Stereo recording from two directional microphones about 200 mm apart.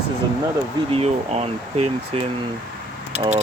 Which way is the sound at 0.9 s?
30° right (ahead or behind).